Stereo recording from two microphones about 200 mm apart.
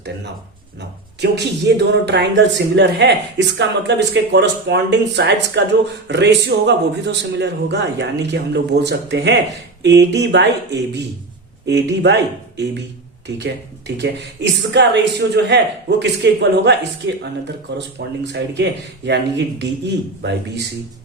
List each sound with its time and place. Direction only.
0.8 s speech: 60° right (ahead or behind)